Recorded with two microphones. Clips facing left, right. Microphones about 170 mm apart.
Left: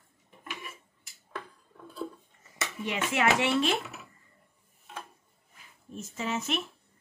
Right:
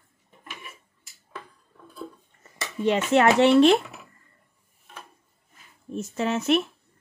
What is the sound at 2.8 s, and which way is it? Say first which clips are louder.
Speech: right 9 dB; 65° right (ahead or behind).